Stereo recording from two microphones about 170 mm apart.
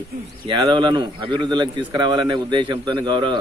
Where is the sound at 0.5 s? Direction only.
25° right (ahead or behind).